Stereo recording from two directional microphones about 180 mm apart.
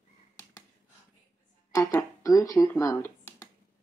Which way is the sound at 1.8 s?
15° left (ahead or behind).